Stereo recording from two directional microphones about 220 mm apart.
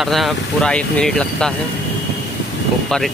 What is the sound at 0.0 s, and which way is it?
Speech, centre (ahead or behind).